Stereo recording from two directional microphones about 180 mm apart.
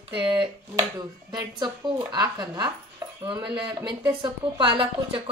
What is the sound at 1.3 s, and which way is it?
A woman's voice, 20° right (ahead or behind).